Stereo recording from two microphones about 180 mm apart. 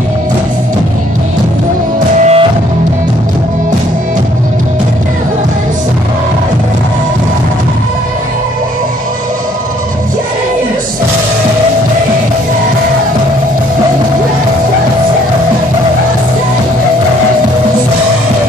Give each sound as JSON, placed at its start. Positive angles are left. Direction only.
{"t": 2.1, "sound": "music", "side_deg": -40}